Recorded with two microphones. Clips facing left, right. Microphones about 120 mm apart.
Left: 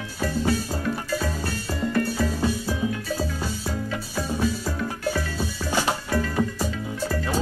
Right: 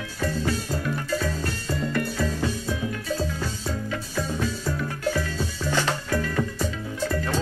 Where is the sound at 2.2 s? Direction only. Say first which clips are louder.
Left 2 dB; 10° left (ahead or behind).